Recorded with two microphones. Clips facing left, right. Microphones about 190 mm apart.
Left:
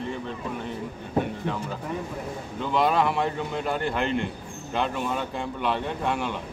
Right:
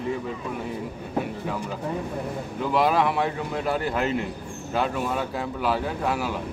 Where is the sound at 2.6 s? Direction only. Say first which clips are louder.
Right 1 dB; 5° right (ahead or behind).